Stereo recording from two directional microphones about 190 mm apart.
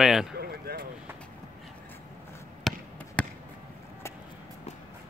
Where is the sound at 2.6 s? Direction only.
Centre (ahead or behind).